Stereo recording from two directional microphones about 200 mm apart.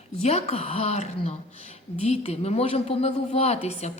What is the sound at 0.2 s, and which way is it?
A woman's voice, 30° left (ahead or behind).